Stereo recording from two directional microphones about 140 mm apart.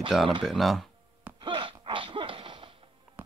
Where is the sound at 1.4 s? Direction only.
35° right (ahead or behind).